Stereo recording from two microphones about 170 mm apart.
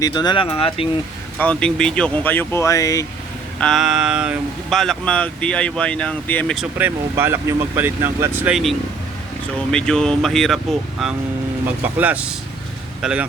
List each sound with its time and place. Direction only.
0.0 s speech: 25° left (ahead or behind)
1.4 s speech: 5° left (ahead or behind)
3.6 s speech: centre (ahead or behind)
6.6 s speech: 10° right (ahead or behind)
9.7 s speech: 5° left (ahead or behind)